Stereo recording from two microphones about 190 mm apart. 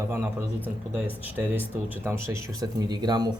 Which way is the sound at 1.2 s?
10° right (ahead or behind).